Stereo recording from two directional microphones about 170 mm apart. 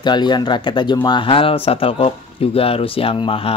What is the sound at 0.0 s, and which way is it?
Speech, 25° left (ahead or behind).